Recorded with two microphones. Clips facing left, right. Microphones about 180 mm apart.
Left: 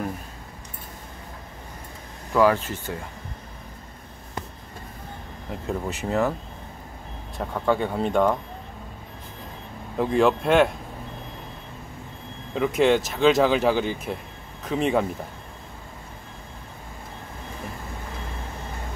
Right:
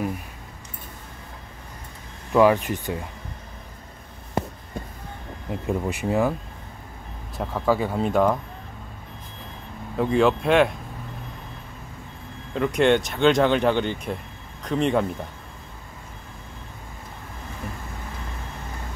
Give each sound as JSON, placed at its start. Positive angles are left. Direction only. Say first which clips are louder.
{"t": 2.3, "sound": "speech", "louder": "right 2 dB", "side_deg": -15}
{"t": 5.7, "sound": "speech", "louder": "right 2 dB", "side_deg": -15}
{"t": 7.3, "sound": "speech", "louder": "right 1 dB", "side_deg": -5}
{"t": 9.9, "sound": "speech", "louder": "even", "side_deg": 0}
{"t": 12.5, "sound": "speech", "louder": "even", "side_deg": 0}